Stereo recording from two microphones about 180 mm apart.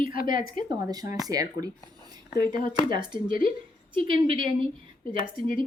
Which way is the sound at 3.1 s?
50° left (ahead or behind).